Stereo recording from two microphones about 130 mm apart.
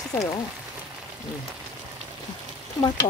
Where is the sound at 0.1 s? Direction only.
20° left (ahead or behind).